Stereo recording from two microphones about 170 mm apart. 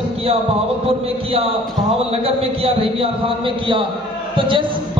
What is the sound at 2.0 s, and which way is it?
A man's voice, 35° right (ahead or behind).